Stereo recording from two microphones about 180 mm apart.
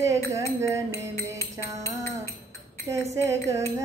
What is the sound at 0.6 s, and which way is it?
Speech, 15° right (ahead or behind).